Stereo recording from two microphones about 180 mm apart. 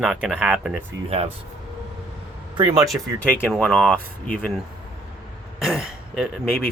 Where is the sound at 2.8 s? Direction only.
Centre (ahead or behind).